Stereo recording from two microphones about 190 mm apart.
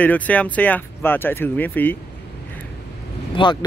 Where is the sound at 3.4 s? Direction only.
25° left (ahead or behind).